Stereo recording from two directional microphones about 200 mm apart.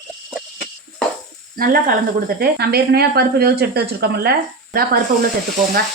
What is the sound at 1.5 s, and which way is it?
Speech, 45° right (ahead or behind).